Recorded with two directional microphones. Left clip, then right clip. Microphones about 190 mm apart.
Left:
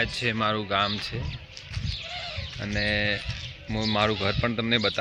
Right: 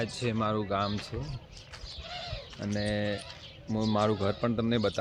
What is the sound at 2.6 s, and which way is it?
Speech, 5° right (ahead or behind).